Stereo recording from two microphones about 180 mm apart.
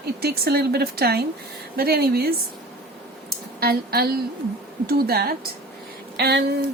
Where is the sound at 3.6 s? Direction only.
60° right (ahead or behind).